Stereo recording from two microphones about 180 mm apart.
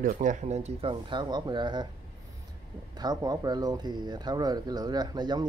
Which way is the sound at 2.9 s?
20° right (ahead or behind).